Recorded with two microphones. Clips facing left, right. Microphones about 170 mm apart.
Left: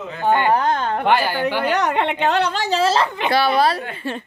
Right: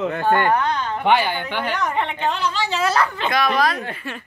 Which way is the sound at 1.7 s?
75° left (ahead or behind).